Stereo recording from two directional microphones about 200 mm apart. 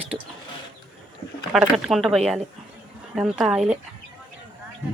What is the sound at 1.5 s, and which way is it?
Speech, centre (ahead or behind).